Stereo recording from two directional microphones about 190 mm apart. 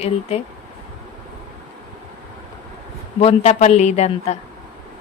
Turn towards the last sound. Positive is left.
turn(degrees=35)  # may be behind; listen again after turning